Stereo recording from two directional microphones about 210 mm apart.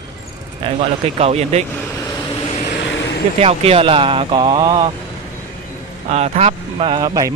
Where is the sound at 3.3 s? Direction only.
30° right (ahead or behind).